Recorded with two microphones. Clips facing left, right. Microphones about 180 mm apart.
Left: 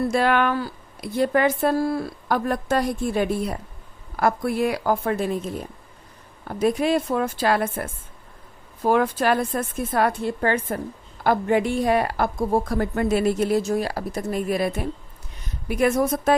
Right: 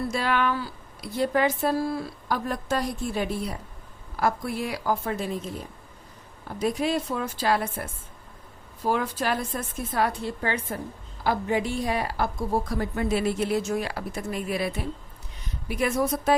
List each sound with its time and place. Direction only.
0.1 s a woman's voice: 55° left (ahead or behind)
6.5 s a woman's voice: 55° left (ahead or behind)